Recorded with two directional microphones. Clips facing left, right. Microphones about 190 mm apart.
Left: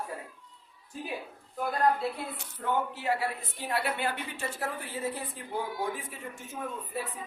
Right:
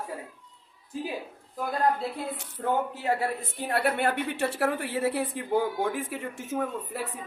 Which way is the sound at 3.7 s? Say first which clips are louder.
Right 5 dB; 55° right (ahead or behind).